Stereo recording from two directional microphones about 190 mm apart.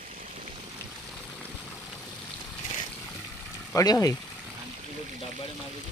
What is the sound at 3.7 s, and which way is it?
Speech, 20° left (ahead or behind).